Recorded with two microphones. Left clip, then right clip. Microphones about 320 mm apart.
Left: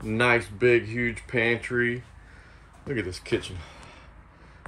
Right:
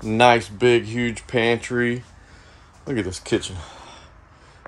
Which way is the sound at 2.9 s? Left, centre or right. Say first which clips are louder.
Right 5 dB; right.